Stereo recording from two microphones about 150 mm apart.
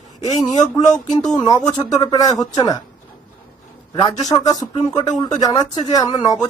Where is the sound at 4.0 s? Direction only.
25° left (ahead or behind).